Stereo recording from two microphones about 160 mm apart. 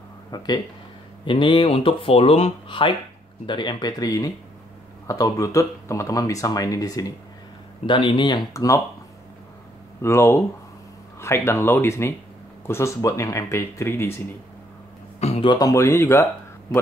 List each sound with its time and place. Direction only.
0.3 s speech: 25° left (ahead or behind)
10.0 s speech: 15° left (ahead or behind)
15.1 s a sound: 45° left (ahead or behind)
15.4 s speech: 25° left (ahead or behind)